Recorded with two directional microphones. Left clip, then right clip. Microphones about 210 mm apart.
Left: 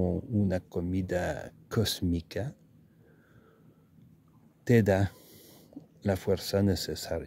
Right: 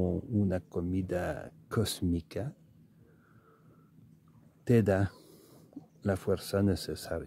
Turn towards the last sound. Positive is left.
turn(degrees=15)  # may be behind; listen again after turning